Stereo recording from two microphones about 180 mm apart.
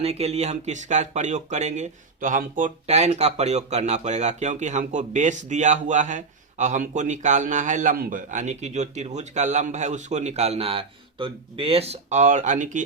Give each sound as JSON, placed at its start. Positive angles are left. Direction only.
{"t": 0.0, "sound": "speech", "side_deg": -35}